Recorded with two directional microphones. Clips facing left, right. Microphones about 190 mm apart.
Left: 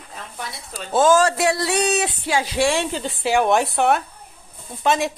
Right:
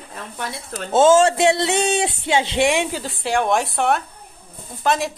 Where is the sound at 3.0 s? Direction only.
Centre (ahead or behind).